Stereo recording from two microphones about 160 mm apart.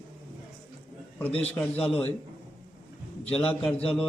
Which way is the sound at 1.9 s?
10° left (ahead or behind).